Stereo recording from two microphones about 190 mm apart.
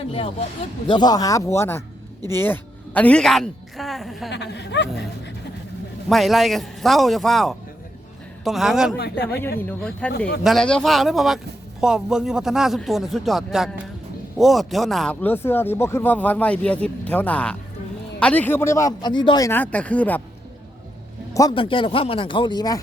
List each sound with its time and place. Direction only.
0.1 s a woman's voice: 30° left (ahead or behind); by 4.3 s centre (ahead or behind)
4.3 s speech: 65° left (ahead or behind)
6.1 s a woman's voice: centre (ahead or behind)
9.0 s speech: 60° left (ahead or behind)
9.6 s speech: 10° left (ahead or behind)
10.1 s speech: 60° left (ahead or behind)
10.4 s a woman's voice: centre (ahead or behind); by 19.5 s 25° left (ahead or behind)
19.5 s speech: 10° left (ahead or behind)
21.3 s speech: 20° left (ahead or behind)